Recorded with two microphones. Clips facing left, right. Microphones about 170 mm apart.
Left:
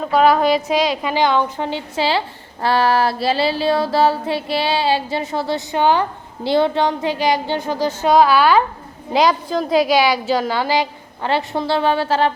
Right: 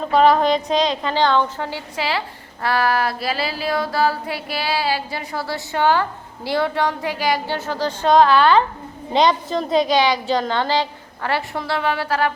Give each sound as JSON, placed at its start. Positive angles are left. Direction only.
{"t": 0.0, "sound": "a woman's voice", "side_deg": 5}